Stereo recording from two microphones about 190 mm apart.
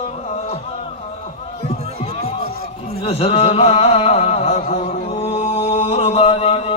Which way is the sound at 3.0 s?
30° left (ahead or behind).